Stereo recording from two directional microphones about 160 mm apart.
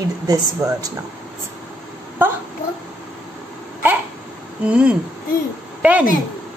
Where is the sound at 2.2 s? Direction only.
10° right (ahead or behind).